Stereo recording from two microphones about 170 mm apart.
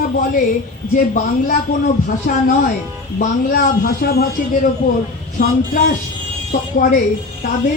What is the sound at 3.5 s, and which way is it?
A man's voice, 65° left (ahead or behind).